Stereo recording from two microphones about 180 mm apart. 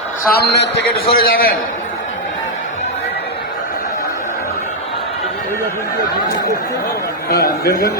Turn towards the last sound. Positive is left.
turn(degrees=60)  # may be behind; listen again after turning